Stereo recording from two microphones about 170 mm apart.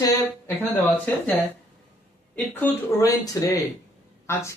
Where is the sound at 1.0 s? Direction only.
10° left (ahead or behind).